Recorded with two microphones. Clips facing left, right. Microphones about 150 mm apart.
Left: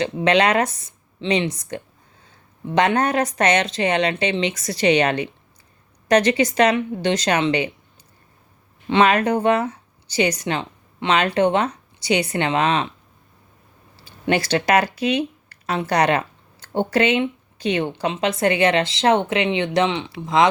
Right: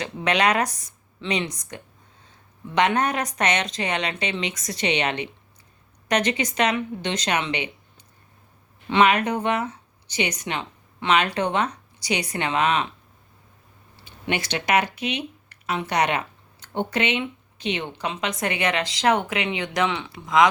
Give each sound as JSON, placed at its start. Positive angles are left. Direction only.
{"t": 0.0, "sound": "a woman's voice", "side_deg": 30}
{"t": 8.9, "sound": "a woman's voice", "side_deg": 30}
{"t": 14.0, "sound": "speech", "side_deg": 35}